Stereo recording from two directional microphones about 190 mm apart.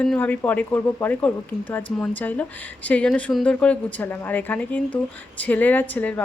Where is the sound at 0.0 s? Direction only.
5° left (ahead or behind).